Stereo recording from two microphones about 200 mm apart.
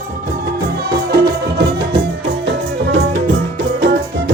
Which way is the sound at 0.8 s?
50° right (ahead or behind).